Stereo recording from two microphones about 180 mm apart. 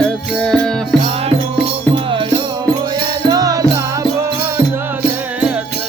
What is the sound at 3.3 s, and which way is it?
Music, 20° right (ahead or behind).